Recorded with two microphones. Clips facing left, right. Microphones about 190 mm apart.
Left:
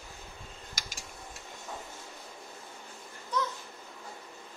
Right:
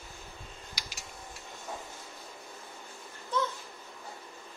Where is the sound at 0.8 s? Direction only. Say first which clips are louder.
Left 1 dB; 45° left (ahead or behind).